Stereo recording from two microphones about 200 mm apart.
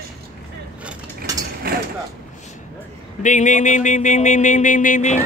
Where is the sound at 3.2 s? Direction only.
40° left (ahead or behind).